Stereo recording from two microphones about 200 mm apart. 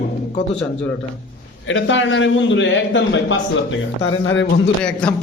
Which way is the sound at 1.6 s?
70° left (ahead or behind).